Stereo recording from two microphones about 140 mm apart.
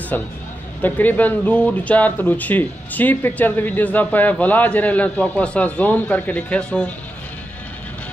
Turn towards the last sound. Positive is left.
turn(degrees=5)  # may be behind; listen again after turning